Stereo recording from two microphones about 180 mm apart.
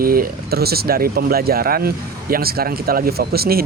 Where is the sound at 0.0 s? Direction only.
55° right (ahead or behind).